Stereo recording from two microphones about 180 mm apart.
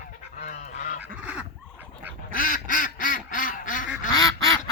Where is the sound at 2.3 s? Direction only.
50° left (ahead or behind).